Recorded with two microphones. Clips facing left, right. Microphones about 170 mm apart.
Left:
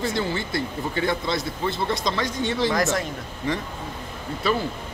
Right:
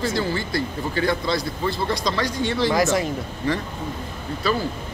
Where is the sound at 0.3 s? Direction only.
25° left (ahead or behind).